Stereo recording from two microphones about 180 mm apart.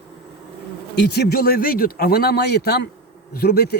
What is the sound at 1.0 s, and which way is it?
Speech, 65° left (ahead or behind).